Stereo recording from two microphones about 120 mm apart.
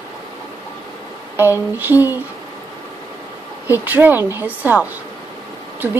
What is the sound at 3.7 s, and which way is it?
A woman's voice, 15° right (ahead or behind).